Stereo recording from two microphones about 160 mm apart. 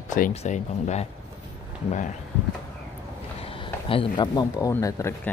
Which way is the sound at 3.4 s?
35° left (ahead or behind).